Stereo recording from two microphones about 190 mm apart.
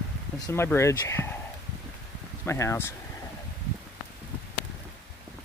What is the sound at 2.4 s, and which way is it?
Speech, 15° left (ahead or behind).